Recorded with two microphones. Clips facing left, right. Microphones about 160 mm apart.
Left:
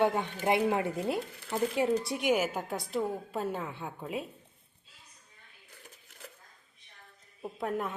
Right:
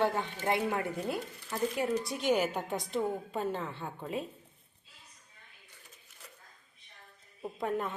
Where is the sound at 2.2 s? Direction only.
10° left (ahead or behind).